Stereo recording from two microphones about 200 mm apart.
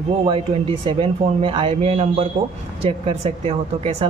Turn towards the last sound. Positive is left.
turn(degrees=-30)  # may be behind; listen again after turning